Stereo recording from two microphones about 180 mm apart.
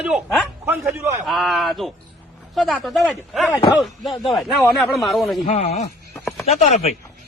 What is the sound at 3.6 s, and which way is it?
Speech, 25° left (ahead or behind).